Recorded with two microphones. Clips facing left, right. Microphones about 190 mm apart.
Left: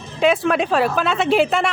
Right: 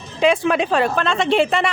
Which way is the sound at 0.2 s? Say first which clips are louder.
Even; centre (ahead or behind).